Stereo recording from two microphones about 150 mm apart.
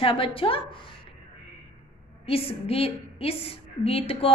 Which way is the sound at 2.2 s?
40° left (ahead or behind).